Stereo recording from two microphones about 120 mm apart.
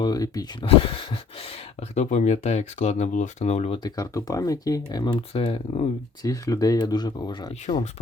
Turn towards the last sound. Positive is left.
turn(degrees=70)  # may be behind; listen again after turning